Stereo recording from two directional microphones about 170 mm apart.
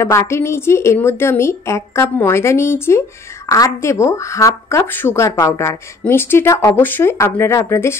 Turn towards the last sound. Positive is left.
turn(degrees=15)  # may be behind; listen again after turning